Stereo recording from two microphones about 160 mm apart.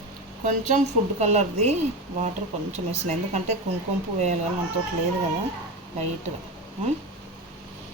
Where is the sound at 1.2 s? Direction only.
45° right (ahead or behind).